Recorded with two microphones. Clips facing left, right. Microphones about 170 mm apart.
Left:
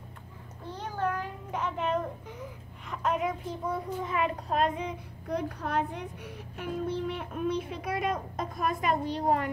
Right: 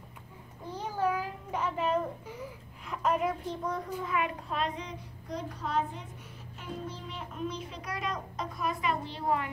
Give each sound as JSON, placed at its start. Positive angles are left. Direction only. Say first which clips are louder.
{"t": 0.7, "sound": "a child's voice", "louder": "right 1 dB", "side_deg": -10}
{"t": 4.0, "sound": "a child's voice", "louder": "left 2 dB", "side_deg": 25}
{"t": 4.5, "sound": "child singing", "louder": "left 6 dB", "side_deg": 50}